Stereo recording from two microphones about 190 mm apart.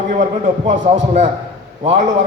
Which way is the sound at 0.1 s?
35° right (ahead or behind).